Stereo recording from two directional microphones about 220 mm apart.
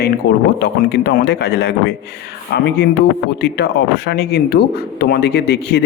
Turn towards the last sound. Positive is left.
turn(degrees=50)  # may be behind; listen again after turning